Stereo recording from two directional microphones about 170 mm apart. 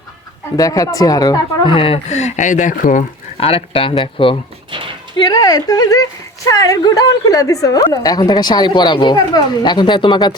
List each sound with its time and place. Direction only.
0.5 s speech: 20° left (ahead or behind); by 3.4 s 50° left (ahead or behind)
3.4 s speech: 35° left (ahead or behind)